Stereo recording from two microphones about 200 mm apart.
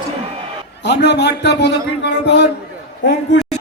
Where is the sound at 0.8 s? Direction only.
60° left (ahead or behind).